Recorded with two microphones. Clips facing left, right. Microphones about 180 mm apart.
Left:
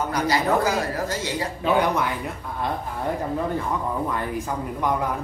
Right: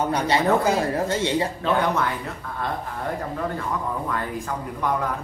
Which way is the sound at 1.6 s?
10° left (ahead or behind).